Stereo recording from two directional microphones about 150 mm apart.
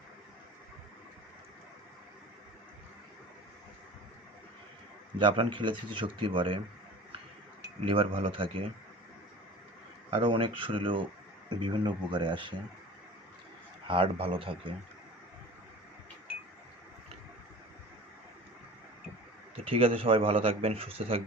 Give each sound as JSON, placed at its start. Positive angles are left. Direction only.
{"t": 5.2, "sound": "speech", "side_deg": -35}
{"t": 7.9, "sound": "speech", "side_deg": -35}
{"t": 10.1, "sound": "speech", "side_deg": -35}
{"t": 13.8, "sound": "speech", "side_deg": -35}
{"t": 19.5, "sound": "speech", "side_deg": -40}